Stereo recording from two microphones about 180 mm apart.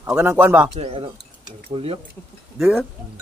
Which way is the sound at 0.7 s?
30° right (ahead or behind).